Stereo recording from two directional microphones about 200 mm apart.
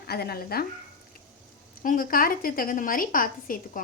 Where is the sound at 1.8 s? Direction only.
45° left (ahead or behind).